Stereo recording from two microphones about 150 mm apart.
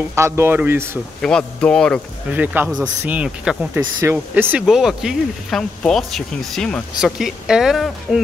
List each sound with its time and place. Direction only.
0.1 s speech: 15° right (ahead or behind)
1.2 s speech: 5° left (ahead or behind)
2.3 s speech: 10° right (ahead or behind)
3.8 s speech: 20° right (ahead or behind); by 8.2 s centre (ahead or behind)